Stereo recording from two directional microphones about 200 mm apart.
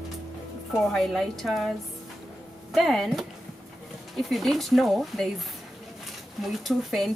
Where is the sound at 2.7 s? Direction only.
Centre (ahead or behind).